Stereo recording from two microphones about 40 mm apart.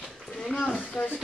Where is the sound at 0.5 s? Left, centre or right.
Left.